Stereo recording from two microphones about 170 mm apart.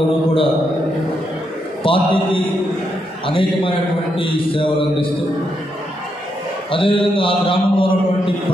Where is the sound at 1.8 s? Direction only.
30° left (ahead or behind).